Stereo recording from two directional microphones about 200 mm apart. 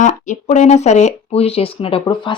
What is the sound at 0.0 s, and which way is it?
Speech, 35° left (ahead or behind).